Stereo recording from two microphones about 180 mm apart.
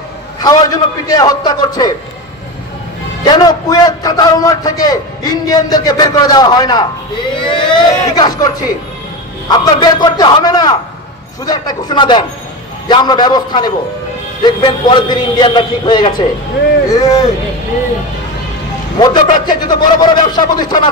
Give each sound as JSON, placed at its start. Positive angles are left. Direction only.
{"t": 0.4, "sound": "a man's voice", "side_deg": 20}
{"t": 3.3, "sound": "a man's voice", "side_deg": 20}
{"t": 18.9, "sound": "a man's voice", "side_deg": 25}